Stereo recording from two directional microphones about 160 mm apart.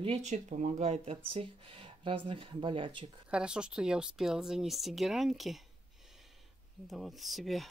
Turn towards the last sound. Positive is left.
turn(degrees=0)  # may be behind; listen again after turning